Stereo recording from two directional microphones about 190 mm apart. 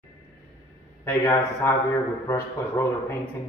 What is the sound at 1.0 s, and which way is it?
Speech, 10° left (ahead or behind).